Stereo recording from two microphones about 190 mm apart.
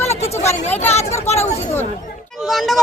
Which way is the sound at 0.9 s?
35° left (ahead or behind).